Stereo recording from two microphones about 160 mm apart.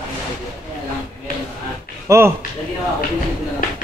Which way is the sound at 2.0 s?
15° right (ahead or behind).